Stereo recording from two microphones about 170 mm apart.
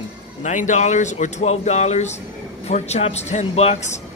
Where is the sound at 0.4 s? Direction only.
45° left (ahead or behind).